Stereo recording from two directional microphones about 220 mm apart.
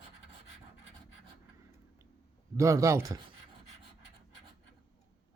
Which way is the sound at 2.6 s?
15° right (ahead or behind).